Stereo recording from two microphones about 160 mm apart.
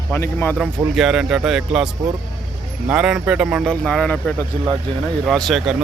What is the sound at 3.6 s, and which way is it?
Speech, 5° left (ahead or behind).